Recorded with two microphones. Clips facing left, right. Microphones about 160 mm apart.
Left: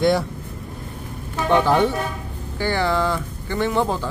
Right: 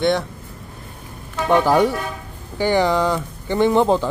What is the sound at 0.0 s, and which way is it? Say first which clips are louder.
Speech: left 1 dB; centre (ahead or behind).